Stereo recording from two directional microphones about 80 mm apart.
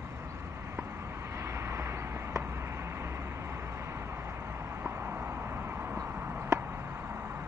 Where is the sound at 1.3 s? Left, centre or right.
Right.